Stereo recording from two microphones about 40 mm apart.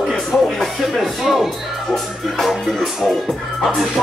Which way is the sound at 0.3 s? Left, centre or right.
Left.